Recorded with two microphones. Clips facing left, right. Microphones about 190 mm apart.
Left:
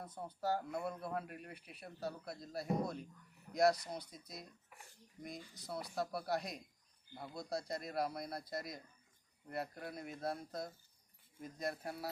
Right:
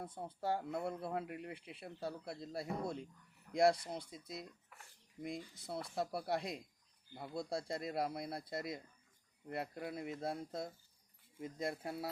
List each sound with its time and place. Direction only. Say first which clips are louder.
0.0 s speech: even; 25° right (ahead or behind)